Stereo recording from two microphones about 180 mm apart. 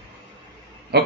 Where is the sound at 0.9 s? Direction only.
65° right (ahead or behind).